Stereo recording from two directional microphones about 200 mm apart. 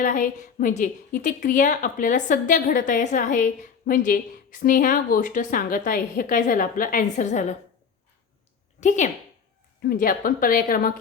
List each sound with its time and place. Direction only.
0.0 s a woman's voice: 40° left (ahead or behind)
8.8 s a woman's voice: 35° left (ahead or behind)